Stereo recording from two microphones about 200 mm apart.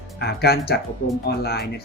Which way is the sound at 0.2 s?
55° left (ahead or behind).